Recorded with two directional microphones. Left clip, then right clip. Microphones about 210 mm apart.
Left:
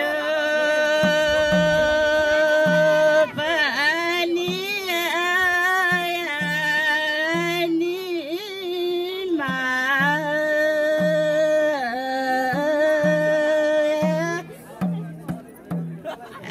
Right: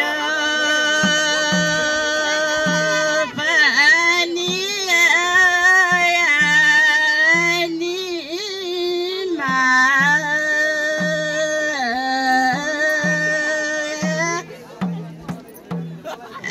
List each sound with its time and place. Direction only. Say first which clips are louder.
0.0 s music: right 2 dB; 30° left (ahead or behind)